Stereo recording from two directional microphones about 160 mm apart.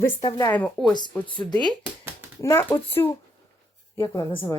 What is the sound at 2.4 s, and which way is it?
Speech, 15° left (ahead or behind).